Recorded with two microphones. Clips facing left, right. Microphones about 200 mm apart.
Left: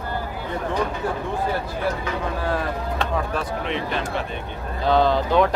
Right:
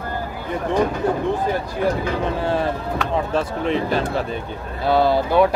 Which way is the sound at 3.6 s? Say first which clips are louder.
Right 6 dB; 40° right (ahead or behind).